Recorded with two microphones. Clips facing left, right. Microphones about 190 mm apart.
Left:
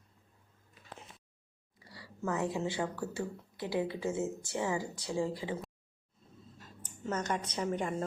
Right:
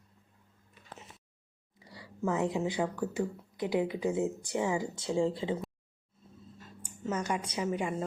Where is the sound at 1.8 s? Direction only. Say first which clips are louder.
Right 4 dB; 20° right (ahead or behind).